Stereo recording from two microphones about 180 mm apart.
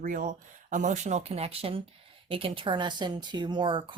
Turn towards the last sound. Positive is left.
turn(degrees=-25)  # may be behind; listen again after turning